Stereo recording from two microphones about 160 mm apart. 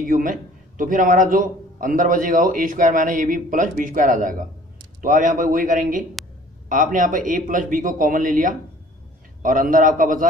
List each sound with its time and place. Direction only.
0.0 s a man's voice: 60° right (ahead or behind)